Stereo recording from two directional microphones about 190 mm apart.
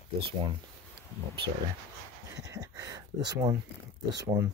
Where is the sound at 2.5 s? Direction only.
15° right (ahead or behind).